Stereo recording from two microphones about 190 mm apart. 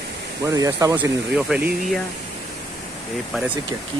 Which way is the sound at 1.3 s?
5° right (ahead or behind).